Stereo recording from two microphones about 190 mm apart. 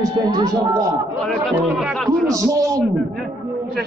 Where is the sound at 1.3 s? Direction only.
Centre (ahead or behind).